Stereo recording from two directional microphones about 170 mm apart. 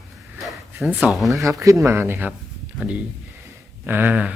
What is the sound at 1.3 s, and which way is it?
Speech, 20° right (ahead or behind).